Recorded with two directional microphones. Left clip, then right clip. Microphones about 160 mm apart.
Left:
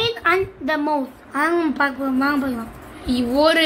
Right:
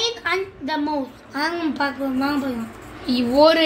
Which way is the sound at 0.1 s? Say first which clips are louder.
Left 5 dB; 50° left (ahead or behind).